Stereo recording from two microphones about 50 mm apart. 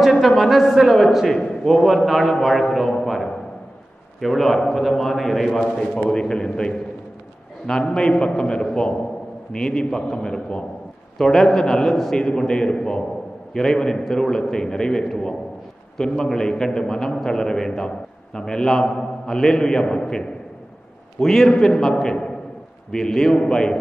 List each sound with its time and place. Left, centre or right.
0.4 s a man's voice: centre
1.4 s a man's voice: centre
1.7 s a man's voice: centre